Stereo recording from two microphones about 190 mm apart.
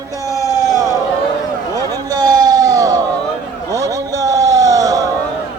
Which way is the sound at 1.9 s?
20° right (ahead or behind).